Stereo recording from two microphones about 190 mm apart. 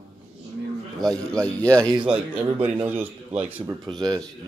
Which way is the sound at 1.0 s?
5° left (ahead or behind).